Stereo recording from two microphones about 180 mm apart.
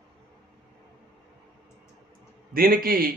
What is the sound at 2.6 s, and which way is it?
Speech, 55° right (ahead or behind).